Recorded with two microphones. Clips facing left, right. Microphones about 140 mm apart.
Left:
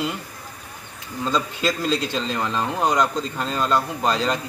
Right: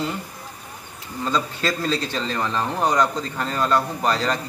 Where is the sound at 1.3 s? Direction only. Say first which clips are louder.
Left 1 dB; 15° left (ahead or behind).